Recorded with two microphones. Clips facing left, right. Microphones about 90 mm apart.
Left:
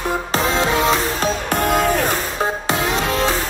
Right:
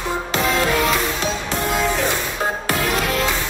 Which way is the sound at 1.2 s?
55° left (ahead or behind).